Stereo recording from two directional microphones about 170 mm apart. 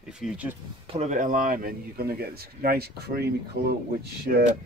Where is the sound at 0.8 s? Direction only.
40° right (ahead or behind); by 3.2 s 70° right (ahead or behind).